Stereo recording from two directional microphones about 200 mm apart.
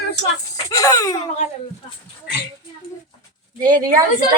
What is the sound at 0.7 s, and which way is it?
Speech, 15° left (ahead or behind).